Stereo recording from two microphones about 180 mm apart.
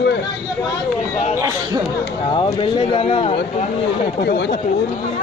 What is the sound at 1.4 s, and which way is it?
Chatter, 20° right (ahead or behind).